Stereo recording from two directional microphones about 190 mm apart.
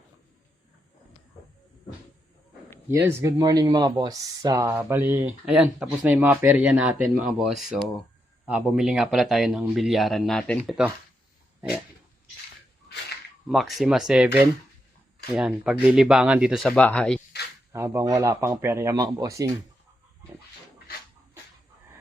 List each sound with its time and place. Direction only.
2.9 s speech: 15° right (ahead or behind)
13.5 s speech: centre (ahead or behind)
15.3 s speech: 5° right (ahead or behind)
17.7 s speech: 10° right (ahead or behind)